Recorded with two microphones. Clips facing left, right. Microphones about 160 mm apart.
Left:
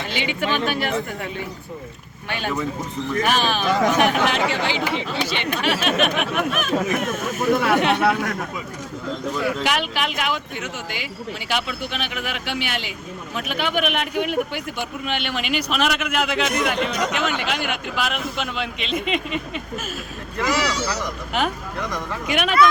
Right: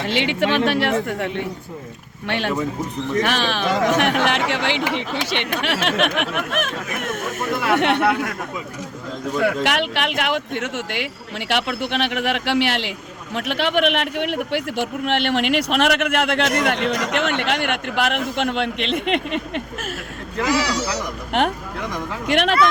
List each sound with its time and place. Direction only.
0.1 s a man's voice: 75° right (ahead or behind)
9.4 s a man's voice: 70° right (ahead or behind)